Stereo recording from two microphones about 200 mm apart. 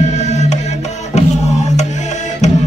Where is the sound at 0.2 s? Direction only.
35° left (ahead or behind).